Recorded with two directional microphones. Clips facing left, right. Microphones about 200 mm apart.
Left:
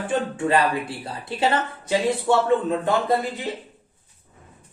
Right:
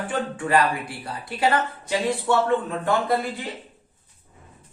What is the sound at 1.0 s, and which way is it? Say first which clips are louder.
Speech: right 2 dB; 25° left (ahead or behind).